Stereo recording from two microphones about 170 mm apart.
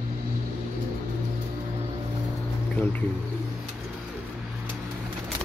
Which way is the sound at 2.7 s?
10° left (ahead or behind).